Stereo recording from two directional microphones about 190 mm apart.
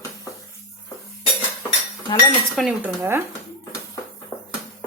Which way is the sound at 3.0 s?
15° right (ahead or behind).